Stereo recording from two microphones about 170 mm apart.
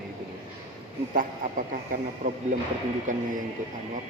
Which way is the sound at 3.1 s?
50° right (ahead or behind).